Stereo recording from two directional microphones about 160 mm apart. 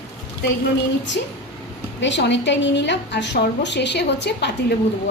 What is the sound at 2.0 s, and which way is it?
A woman's voice, 90° left.